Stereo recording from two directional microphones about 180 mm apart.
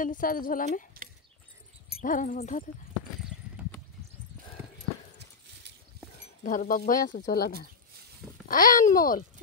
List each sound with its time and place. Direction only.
0.0 s speech: 50° left (ahead or behind)
1.0 s horse: 55° right (ahead or behind)
2.0 s speech: 45° left (ahead or behind)
6.4 s speech: 50° left (ahead or behind)
7.1 s speech: 75° left (ahead or behind); by 9.2 s 50° left (ahead or behind)